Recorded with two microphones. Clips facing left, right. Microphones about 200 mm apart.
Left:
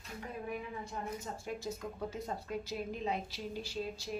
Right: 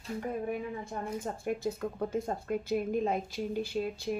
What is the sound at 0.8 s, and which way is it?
Speech, 55° right (ahead or behind).